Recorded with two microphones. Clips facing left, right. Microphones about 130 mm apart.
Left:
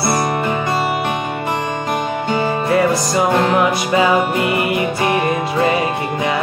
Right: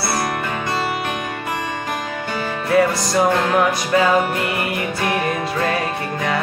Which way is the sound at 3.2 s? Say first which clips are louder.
Left 1 dB; 5° left (ahead or behind).